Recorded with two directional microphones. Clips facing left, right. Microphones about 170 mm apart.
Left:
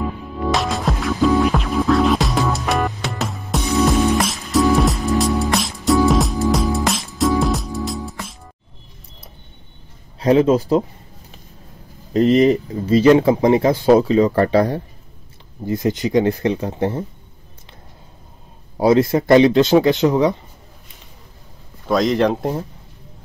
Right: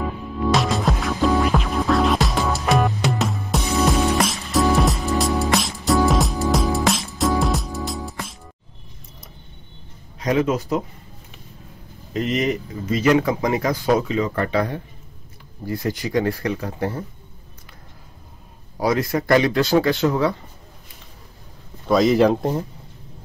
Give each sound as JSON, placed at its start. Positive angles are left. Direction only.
{"t": 0.5, "sound": "music", "side_deg": 0}
{"t": 10.1, "sound": "speech", "side_deg": 30}
{"t": 12.1, "sound": "speech", "side_deg": 35}
{"t": 15.6, "sound": "speech", "side_deg": 20}
{"t": 18.8, "sound": "speech", "side_deg": 25}
{"t": 21.8, "sound": "speech", "side_deg": -5}